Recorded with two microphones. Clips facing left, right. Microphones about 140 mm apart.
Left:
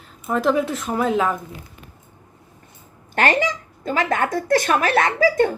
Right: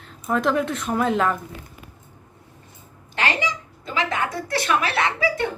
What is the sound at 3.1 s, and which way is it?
A woman's voice, 50° left (ahead or behind).